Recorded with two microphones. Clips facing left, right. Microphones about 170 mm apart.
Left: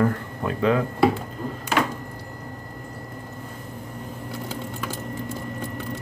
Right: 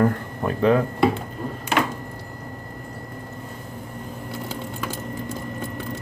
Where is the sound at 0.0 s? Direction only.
40° right (ahead or behind).